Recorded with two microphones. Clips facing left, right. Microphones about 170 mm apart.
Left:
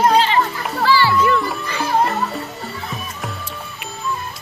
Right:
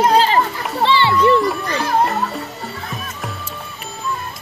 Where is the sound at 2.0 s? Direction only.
Centre (ahead or behind).